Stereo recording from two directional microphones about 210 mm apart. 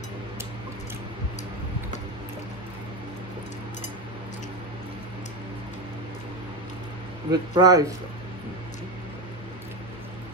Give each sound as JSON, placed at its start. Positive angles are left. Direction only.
{"t": 7.2, "sound": "speech", "side_deg": -20}